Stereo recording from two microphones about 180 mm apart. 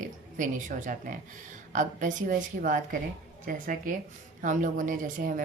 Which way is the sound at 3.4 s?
50° right (ahead or behind).